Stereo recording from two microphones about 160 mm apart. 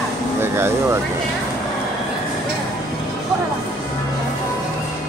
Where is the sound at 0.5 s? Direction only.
15° right (ahead or behind).